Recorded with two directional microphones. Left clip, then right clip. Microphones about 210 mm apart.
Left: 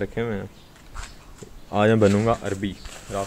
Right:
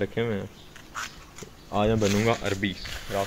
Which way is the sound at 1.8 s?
55° left (ahead or behind).